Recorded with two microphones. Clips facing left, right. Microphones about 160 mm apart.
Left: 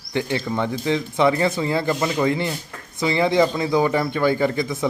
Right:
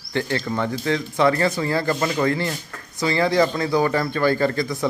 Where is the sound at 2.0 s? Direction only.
10° left (ahead or behind).